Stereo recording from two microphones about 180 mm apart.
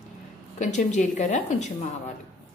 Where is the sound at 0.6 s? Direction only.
40° left (ahead or behind).